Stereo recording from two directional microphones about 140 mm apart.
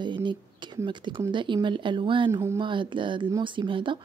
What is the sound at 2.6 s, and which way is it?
Speech, 35° right (ahead or behind).